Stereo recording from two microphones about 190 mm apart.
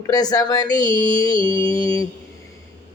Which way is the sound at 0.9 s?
25° right (ahead or behind).